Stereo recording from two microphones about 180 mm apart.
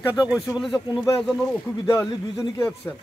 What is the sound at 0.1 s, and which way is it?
Speech, 5° right (ahead or behind).